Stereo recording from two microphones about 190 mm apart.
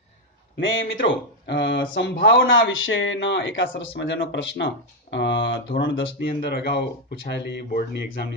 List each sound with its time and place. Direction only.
0.6 s a man's voice: 85° left
1.0 s a man's voice: 65° left (ahead or behind)